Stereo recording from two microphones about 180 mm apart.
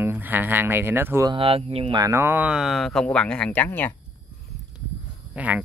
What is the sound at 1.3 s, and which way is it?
Speech, 30° right (ahead or behind).